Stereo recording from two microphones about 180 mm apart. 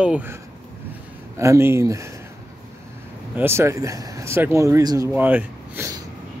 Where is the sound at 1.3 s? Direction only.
15° right (ahead or behind).